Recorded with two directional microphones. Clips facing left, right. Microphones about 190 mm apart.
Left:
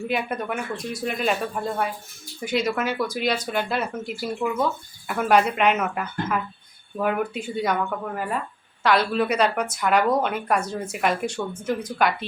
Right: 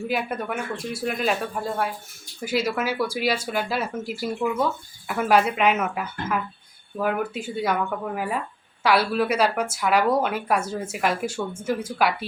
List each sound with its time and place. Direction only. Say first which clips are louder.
0.0 s a woman's voice: even; 5° right (ahead or behind)